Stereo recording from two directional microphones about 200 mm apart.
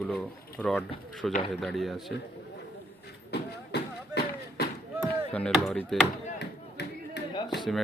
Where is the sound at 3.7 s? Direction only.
55° left (ahead or behind).